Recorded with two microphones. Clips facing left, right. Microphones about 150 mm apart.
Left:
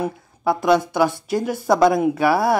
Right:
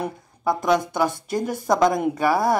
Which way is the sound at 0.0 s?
5° left (ahead or behind).